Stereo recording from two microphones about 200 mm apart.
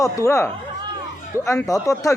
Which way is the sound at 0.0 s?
15° left (ahead or behind).